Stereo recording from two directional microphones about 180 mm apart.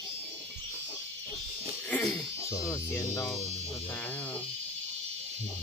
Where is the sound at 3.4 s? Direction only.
40° right (ahead or behind).